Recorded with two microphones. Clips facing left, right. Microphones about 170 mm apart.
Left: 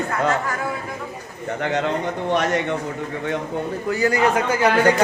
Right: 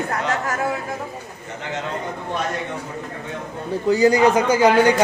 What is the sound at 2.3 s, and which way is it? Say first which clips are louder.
Speech: left 5 dB; 75° left (ahead or behind).